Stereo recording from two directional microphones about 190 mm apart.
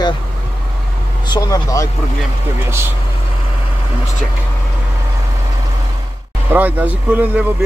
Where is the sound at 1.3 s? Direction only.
20° left (ahead or behind).